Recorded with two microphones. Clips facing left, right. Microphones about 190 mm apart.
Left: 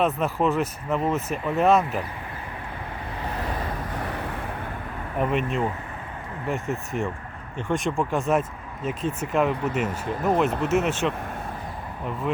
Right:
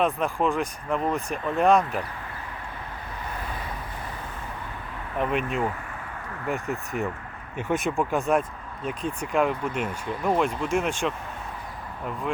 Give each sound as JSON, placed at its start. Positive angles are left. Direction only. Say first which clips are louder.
{"t": 0.0, "sound": "speech", "louder": "left 1 dB", "side_deg": 5}
{"t": 5.2, "sound": "speech", "louder": "left 1 dB", "side_deg": 0}